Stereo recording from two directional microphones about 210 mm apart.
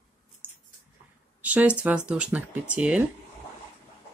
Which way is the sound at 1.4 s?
5° right (ahead or behind).